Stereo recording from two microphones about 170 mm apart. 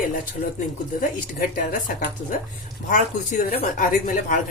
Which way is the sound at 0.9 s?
55° left (ahead or behind).